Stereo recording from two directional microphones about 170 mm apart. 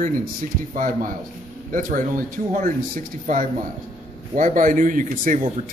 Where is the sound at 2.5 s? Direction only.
50° right (ahead or behind).